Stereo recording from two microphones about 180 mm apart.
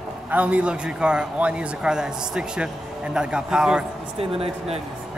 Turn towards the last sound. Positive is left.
turn(degrees=-30)  # may be behind; listen again after turning